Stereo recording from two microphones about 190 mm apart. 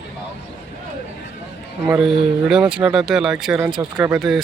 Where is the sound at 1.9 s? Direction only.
5° right (ahead or behind).